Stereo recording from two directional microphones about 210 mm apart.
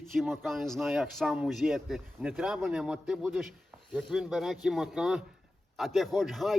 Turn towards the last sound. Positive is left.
turn(degrees=0)  # may be behind; listen again after turning